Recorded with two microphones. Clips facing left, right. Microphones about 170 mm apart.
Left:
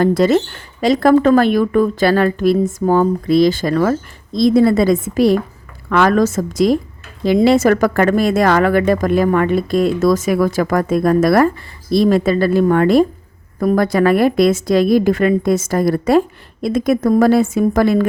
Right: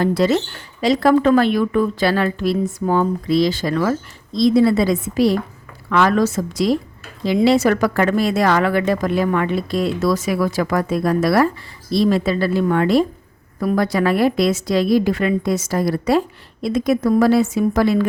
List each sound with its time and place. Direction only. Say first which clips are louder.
0.0 s a woman's voice: left 4 dB; 50° left (ahead or behind)